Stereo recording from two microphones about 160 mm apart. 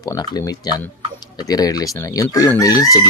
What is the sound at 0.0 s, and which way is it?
Chicken, 25° left (ahead or behind).